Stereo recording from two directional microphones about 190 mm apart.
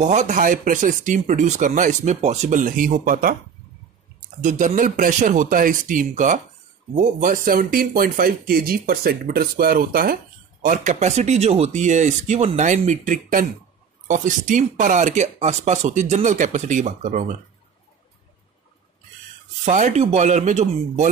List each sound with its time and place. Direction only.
0.0 s speech: 40° right (ahead or behind)
4.4 s speech: 40° right (ahead or behind)
19.6 s speech: 40° right (ahead or behind)